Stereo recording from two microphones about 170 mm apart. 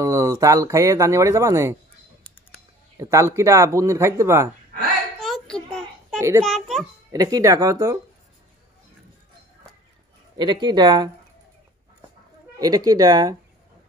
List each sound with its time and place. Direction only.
0.0 s speech: 20° right (ahead or behind)
3.0 s speech: 15° right (ahead or behind)
5.2 s a sound: centre (ahead or behind)
6.4 s a child's voice: centre (ahead or behind)
7.1 s speech: 20° right (ahead or behind)
10.3 s speech: 25° right (ahead or behind)
12.5 s speech: 20° right (ahead or behind)